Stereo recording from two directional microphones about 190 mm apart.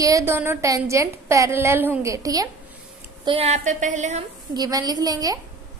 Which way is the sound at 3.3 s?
35° right (ahead or behind).